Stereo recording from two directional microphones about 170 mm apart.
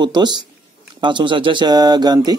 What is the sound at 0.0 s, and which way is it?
Speech, 25° right (ahead or behind).